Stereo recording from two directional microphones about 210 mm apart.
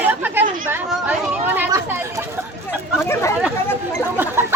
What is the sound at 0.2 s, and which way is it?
Chatter, 10° right (ahead or behind).